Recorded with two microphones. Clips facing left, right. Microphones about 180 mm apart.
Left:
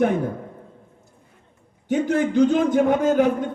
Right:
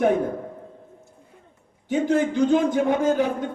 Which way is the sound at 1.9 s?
55° left (ahead or behind).